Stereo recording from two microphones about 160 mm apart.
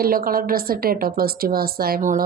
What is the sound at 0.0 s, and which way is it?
A woman's voice, 65° right (ahead or behind).